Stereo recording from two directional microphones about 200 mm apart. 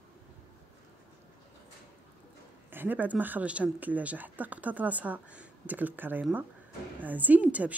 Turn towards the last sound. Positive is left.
turn(degrees=-5)  # may be behind; listen again after turning